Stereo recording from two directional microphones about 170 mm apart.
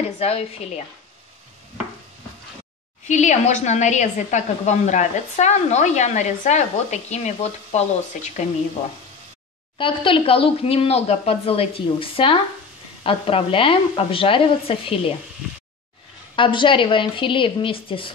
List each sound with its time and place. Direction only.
0.2 s speech: 35° left (ahead or behind)
3.1 s a woman's voice: 45° left (ahead or behind)
9.8 s speech: 30° left (ahead or behind)
16.3 s speech: 30° left (ahead or behind)